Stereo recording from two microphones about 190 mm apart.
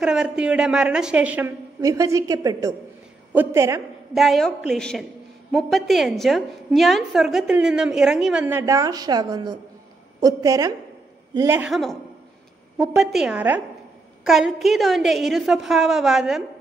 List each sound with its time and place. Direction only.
0.0 s a woman's voice: 5° right (ahead or behind)
4.1 s a woman's voice: centre (ahead or behind)
11.7 s a woman's voice: centre (ahead or behind)